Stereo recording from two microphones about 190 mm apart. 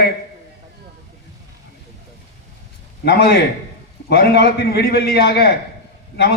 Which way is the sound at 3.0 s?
55° left (ahead or behind).